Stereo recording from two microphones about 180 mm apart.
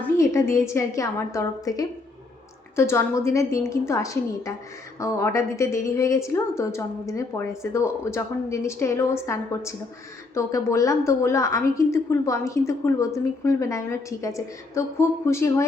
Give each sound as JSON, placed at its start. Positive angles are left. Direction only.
{"t": 0.2, "sound": "a woman's voice", "side_deg": 15}